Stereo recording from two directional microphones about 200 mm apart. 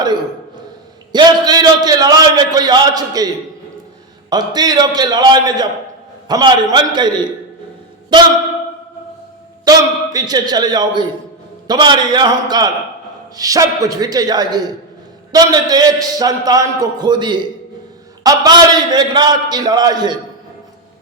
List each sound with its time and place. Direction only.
1.1 s a man's voice: 20° right (ahead or behind)
4.3 s a man's voice: 20° right (ahead or behind)
9.6 s a man's voice: 20° right (ahead or behind)